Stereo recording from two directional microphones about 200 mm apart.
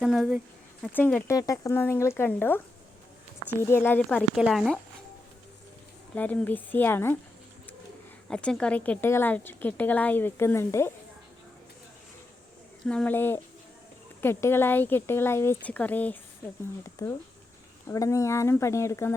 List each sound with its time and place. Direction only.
0.0 s speech: centre (ahead or behind)
0.9 s a woman's voice: 10° left (ahead or behind)
3.6 s a woman's voice: 10° left (ahead or behind)
4.4 s speech: centre (ahead or behind)
6.1 s a woman's voice: 10° left (ahead or behind)
8.3 s a woman's voice: 5° left (ahead or behind)
12.8 s a woman's voice: 5° left (ahead or behind)